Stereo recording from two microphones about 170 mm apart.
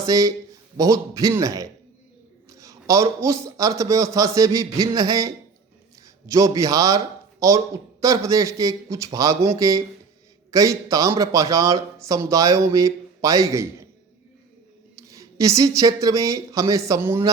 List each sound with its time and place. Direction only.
0.0 s a man's voice: 20° right (ahead or behind)
14.9 s speech: 20° right (ahead or behind)